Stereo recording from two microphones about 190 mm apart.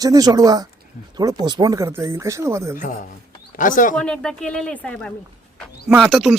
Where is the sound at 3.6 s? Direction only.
45° left (ahead or behind).